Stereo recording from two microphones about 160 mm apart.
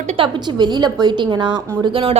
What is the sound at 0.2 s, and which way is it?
A woman's voice, 25° right (ahead or behind).